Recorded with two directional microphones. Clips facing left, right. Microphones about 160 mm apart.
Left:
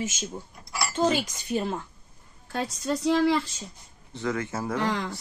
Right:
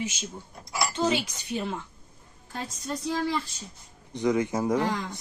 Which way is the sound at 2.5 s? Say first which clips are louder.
Left 6 dB; 80° left.